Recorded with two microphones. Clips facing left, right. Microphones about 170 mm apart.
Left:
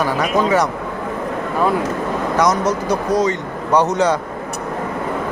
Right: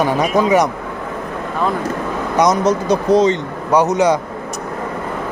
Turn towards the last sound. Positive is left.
turn(degrees=-15)  # may be behind; listen again after turning